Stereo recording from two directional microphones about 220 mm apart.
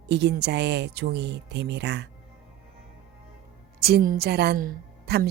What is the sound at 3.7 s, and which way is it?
A woman's voice, 45° right (ahead or behind).